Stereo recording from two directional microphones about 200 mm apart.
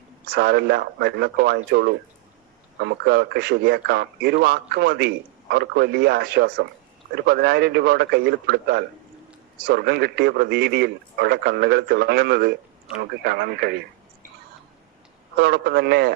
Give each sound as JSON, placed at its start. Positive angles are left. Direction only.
{"t": 0.3, "sound": "a man's voice", "side_deg": -55}
{"t": 15.4, "sound": "a man's voice", "side_deg": -55}